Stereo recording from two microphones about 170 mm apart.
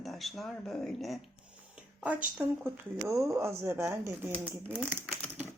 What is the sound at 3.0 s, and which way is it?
Speech, 15° right (ahead or behind).